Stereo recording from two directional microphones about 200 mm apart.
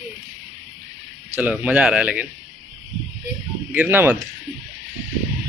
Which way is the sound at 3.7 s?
10° right (ahead or behind).